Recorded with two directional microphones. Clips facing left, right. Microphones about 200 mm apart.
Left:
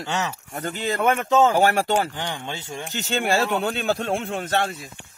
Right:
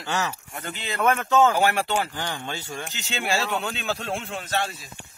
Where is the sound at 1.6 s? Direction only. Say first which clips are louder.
Left 3 dB; 45° left (ahead or behind).